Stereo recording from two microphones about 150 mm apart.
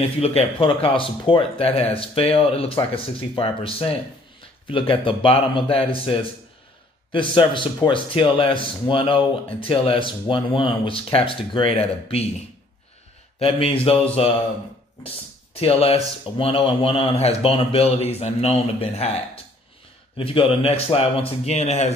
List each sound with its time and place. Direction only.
0.2 s speech: 40° left (ahead or behind)
13.4 s speech: 40° left (ahead or behind)
15.6 s speech: 40° left (ahead or behind)